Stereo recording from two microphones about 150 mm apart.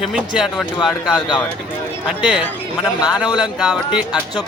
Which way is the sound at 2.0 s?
5° right (ahead or behind).